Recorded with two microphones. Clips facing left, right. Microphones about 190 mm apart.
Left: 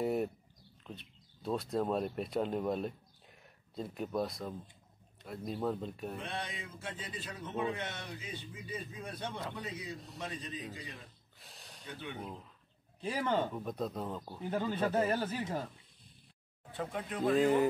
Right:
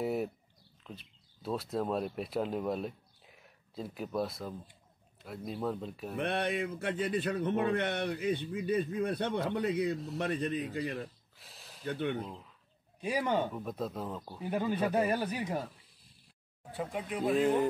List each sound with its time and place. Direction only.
0.0 s a sound: centre (ahead or behind)
0.8 s speech: centre (ahead or behind)
6.1 s a man's voice: 65° right (ahead or behind)
11.3 s a sound: centre (ahead or behind)
11.8 s a man's voice: 60° right (ahead or behind)
13.0 s speech: 15° right (ahead or behind)
13.6 s speech: centre (ahead or behind)
14.4 s speech: 15° right (ahead or behind)
16.7 s speech: 5° right (ahead or behind)